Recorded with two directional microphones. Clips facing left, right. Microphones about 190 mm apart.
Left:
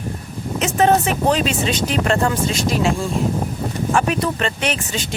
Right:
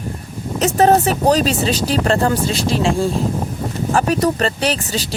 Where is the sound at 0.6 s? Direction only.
40° right (ahead or behind).